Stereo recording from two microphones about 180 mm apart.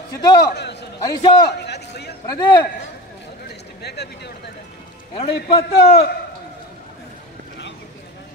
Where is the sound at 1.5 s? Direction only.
65° left (ahead or behind).